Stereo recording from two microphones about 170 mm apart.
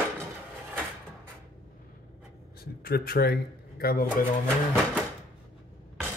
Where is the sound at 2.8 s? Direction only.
60° left (ahead or behind).